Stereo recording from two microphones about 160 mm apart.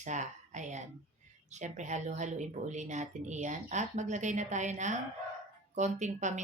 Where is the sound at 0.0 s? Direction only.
50° right (ahead or behind).